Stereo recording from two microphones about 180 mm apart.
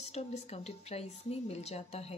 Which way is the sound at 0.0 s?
35° left (ahead or behind).